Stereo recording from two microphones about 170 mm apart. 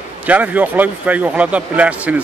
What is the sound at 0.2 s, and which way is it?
A man's voice, 10° right (ahead or behind).